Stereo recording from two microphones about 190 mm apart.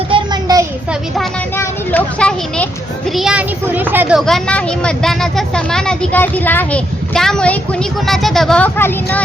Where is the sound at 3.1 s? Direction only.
Centre (ahead or behind).